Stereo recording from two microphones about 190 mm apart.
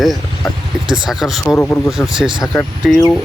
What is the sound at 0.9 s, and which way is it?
Speech, centre (ahead or behind).